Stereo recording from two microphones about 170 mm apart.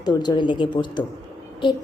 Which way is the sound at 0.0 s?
25° left (ahead or behind).